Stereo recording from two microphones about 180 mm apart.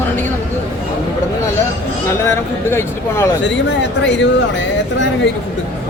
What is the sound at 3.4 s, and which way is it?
Speech, 80° left.